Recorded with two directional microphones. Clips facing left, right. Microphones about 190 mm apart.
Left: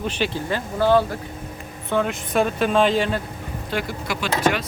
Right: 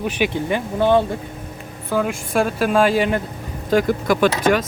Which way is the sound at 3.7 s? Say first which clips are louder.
Right 10 dB; 45° right (ahead or behind).